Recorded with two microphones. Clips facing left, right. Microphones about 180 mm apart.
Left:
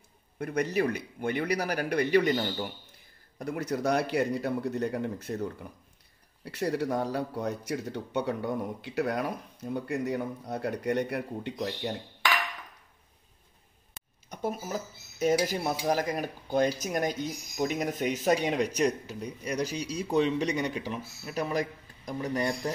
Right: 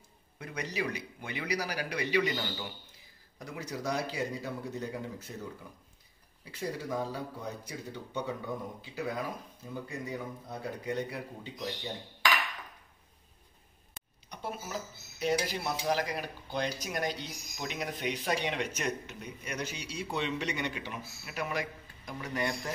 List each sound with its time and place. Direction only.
0.4 s a man's voice: 55° left (ahead or behind)
3.3 s speech: 60° left (ahead or behind)
6.4 s speech: 70° left (ahead or behind)
14.3 s speech: 45° left (ahead or behind)